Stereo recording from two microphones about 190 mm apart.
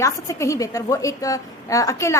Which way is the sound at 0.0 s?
15° left (ahead or behind).